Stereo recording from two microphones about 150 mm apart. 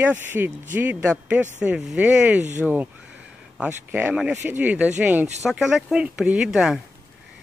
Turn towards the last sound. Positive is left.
turn(degrees=-5)  # may be behind; listen again after turning